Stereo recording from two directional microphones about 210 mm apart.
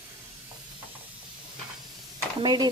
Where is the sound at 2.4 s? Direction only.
20° right (ahead or behind).